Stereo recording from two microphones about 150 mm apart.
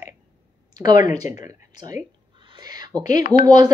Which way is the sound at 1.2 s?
25° right (ahead or behind).